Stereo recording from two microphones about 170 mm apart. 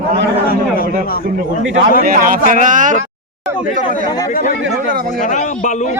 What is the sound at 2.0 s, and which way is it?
Speech, 55° right (ahead or behind).